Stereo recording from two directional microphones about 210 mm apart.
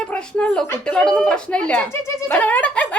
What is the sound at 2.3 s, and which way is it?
Music, 10° left (ahead or behind).